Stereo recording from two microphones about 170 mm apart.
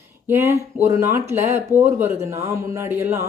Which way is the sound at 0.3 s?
15° right (ahead or behind).